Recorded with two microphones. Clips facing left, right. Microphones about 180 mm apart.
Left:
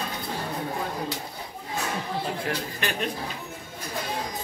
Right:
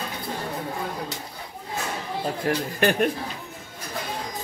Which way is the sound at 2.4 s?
50° right (ahead or behind).